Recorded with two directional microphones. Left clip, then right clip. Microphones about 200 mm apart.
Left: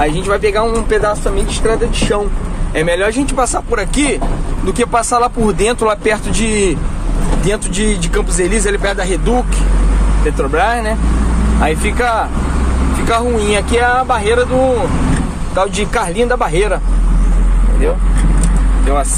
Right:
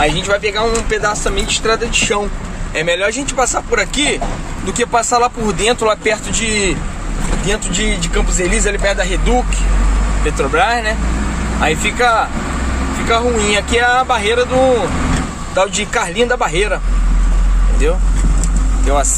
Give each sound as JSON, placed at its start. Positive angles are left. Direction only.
{"t": 0.0, "sound": "speech", "side_deg": 5}
{"t": 1.7, "sound": "speech", "side_deg": -20}
{"t": 2.7, "sound": "speech", "side_deg": -5}
{"t": 10.4, "sound": "speech", "side_deg": 0}